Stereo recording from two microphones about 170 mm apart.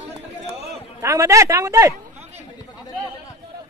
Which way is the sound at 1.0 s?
20° right (ahead or behind).